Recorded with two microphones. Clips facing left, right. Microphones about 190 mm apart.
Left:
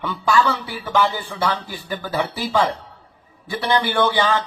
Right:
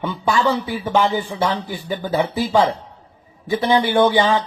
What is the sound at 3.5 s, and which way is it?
Speech, 15° right (ahead or behind).